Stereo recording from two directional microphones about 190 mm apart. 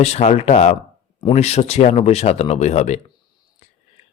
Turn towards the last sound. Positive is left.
turn(degrees=35)  # may be behind; listen again after turning